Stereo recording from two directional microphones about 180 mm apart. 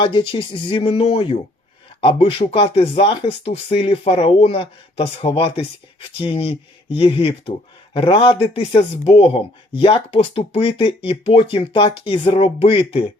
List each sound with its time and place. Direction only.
0.0 s speech: 30° left (ahead or behind)